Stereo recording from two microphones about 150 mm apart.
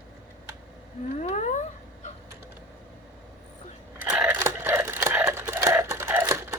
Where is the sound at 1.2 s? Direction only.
50° left (ahead or behind).